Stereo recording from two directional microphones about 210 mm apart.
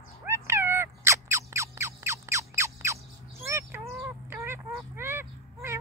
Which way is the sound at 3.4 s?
10° right (ahead or behind).